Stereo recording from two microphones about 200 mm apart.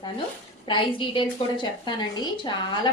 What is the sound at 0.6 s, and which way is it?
A woman's voice, 25° left (ahead or behind).